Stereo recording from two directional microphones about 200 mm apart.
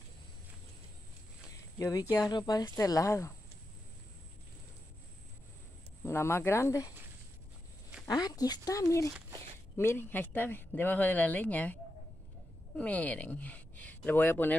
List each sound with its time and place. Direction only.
1.8 s speech: 15° left (ahead or behind)
6.0 s speech: 15° left (ahead or behind)
8.1 s speech: 20° left (ahead or behind)